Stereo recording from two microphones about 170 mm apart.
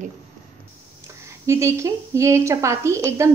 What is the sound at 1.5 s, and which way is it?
A woman's voice, 15° right (ahead or behind).